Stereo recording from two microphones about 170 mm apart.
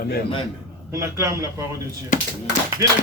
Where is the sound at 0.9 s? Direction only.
20° right (ahead or behind).